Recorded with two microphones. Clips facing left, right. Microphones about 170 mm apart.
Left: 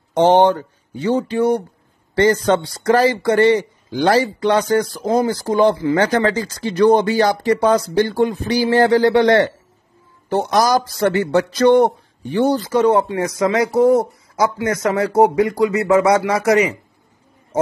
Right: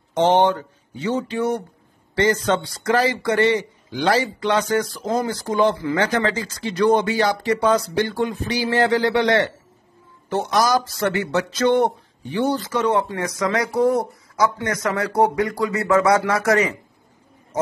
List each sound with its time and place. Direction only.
0.2 s a man's voice: 40° left (ahead or behind); by 16.7 s 20° left (ahead or behind)